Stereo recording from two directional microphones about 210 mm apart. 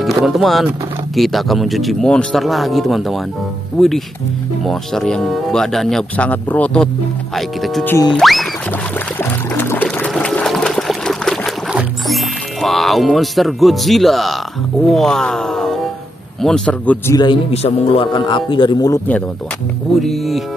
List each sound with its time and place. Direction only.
0.0 s speech: centre (ahead or behind)
9.2 s water: 10° left (ahead or behind)
12.6 s speech: centre (ahead or behind)
17.2 s a man's voice: 25° left (ahead or behind)
20.0 s speech: centre (ahead or behind)